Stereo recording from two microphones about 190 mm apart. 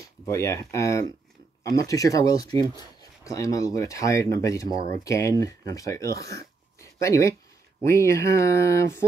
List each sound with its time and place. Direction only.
0.2 s speech: 15° left (ahead or behind)